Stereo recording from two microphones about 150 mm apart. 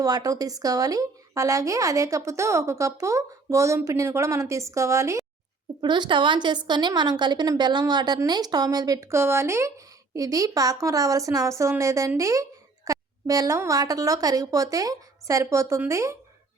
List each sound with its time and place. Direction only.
0.0 s a woman's voice: 25° right (ahead or behind)